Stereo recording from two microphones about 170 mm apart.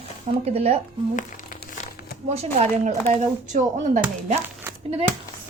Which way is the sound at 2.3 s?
40° right (ahead or behind).